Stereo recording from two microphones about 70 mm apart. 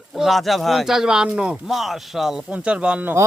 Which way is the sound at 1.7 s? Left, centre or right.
Centre.